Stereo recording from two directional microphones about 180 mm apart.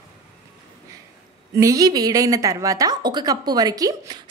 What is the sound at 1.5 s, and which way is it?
A woman's voice, 20° right (ahead or behind).